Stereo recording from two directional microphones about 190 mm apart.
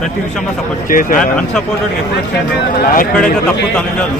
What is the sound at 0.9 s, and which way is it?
Speech, 45° left (ahead or behind).